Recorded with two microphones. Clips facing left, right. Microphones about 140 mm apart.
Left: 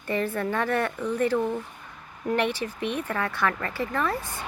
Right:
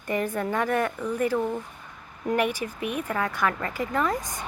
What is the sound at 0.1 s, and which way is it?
Speech, 15° right (ahead or behind).